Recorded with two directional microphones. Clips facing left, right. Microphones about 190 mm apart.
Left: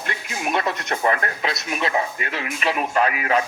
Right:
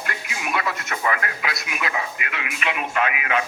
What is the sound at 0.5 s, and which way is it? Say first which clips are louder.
Speech: left 2 dB; 25° left (ahead or behind).